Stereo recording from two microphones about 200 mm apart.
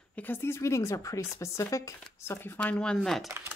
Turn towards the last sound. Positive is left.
turn(degrees=0)  # may be behind; listen again after turning